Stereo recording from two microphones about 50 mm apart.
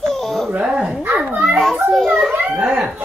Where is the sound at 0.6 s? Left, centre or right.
Centre.